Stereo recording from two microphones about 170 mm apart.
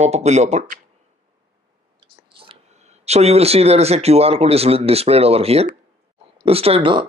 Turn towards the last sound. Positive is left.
turn(degrees=-30)  # may be behind; listen again after turning